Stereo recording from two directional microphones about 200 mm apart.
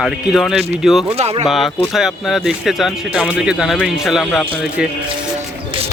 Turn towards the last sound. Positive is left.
turn(degrees=-5)  # may be behind; listen again after turning